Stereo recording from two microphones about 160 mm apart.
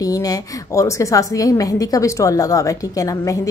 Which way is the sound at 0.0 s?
20° left (ahead or behind).